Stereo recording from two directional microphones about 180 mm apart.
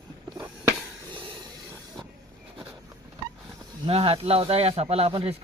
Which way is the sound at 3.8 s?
30° right (ahead or behind).